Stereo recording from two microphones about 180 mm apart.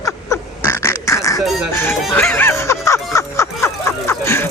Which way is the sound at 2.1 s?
5° left (ahead or behind).